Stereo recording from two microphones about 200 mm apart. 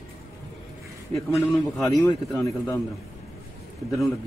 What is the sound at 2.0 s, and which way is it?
Speech, 15° left (ahead or behind).